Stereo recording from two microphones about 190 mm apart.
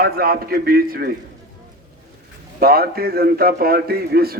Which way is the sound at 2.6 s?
50° right (ahead or behind).